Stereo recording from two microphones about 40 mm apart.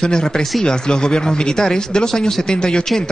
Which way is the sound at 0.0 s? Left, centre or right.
Centre.